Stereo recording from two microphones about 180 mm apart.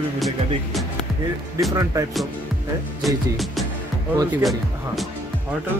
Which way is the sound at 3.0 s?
Centre (ahead or behind).